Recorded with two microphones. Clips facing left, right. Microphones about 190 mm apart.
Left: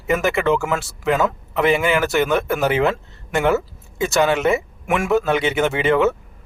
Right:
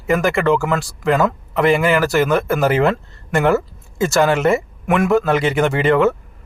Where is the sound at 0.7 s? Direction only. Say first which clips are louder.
Right 3 dB; 5° left (ahead or behind).